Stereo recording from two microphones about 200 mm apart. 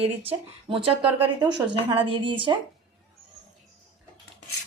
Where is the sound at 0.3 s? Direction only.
25° right (ahead or behind).